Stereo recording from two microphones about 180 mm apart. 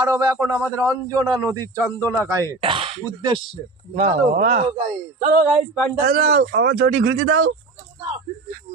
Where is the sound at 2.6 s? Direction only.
30° right (ahead or behind).